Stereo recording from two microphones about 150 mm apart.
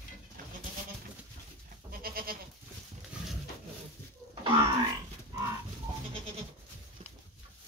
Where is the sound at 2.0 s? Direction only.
80° right.